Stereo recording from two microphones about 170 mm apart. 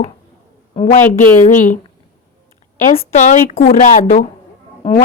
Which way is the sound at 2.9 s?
45° left (ahead or behind).